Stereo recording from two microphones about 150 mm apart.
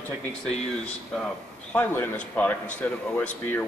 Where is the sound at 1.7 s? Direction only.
10° left (ahead or behind).